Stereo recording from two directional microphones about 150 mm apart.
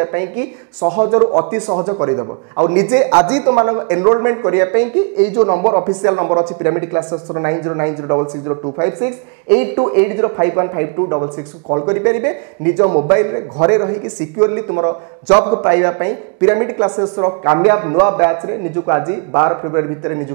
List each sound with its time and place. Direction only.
0.0 s speech: 15° right (ahead or behind)
0.8 s speech: 30° right (ahead or behind)
5.3 s speech: 30° right (ahead or behind)
15.7 s speech: 20° right (ahead or behind)